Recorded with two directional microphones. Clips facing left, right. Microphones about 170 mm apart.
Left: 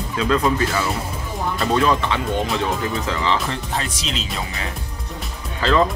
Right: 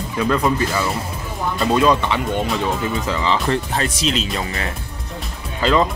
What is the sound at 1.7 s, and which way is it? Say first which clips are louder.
Speech: right 3 dB; 15° right (ahead or behind).